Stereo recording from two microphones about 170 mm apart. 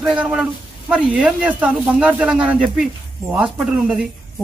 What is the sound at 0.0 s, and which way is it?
A man's voice, 5° right (ahead or behind).